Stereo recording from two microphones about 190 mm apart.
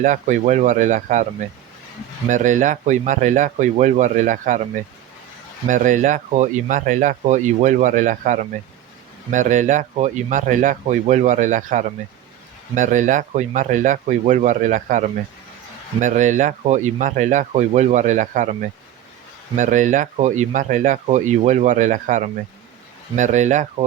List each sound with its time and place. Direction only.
0.0 s speech: 40° right (ahead or behind)
2.3 s speech: 40° right (ahead or behind)
5.6 s speech: 45° right (ahead or behind)
19.5 s speech: 40° right (ahead or behind)